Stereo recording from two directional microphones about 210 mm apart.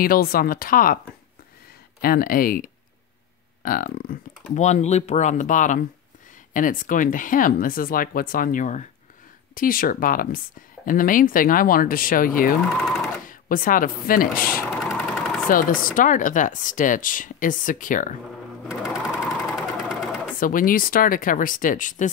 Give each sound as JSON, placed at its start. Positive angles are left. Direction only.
{"t": 0.0, "sound": "speech", "side_deg": 45}
{"t": 2.0, "sound": "speech", "side_deg": 45}
{"t": 3.6, "sound": "speech", "side_deg": 40}
{"t": 12.8, "sound": "sewing machine", "side_deg": 0}
{"t": 13.3, "sound": "speech", "side_deg": 40}
{"t": 14.7, "sound": "a sound", "side_deg": 0}
{"t": 15.4, "sound": "speech", "side_deg": 40}
{"t": 18.7, "sound": "sewing machine", "side_deg": -5}
{"t": 20.3, "sound": "speech", "side_deg": 40}